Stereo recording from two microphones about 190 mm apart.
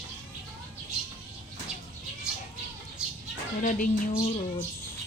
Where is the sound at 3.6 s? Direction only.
45° left (ahead or behind).